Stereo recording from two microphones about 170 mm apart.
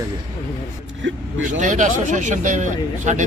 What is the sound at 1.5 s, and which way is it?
Speech, 50° right (ahead or behind).